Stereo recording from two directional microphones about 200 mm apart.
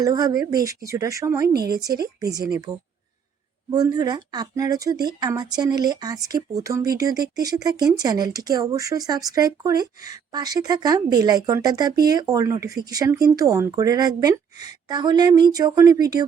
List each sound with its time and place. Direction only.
0.0 s speech: 20° right (ahead or behind)
1.5 s speech: 50° right (ahead or behind)
3.7 s speech: 20° right (ahead or behind)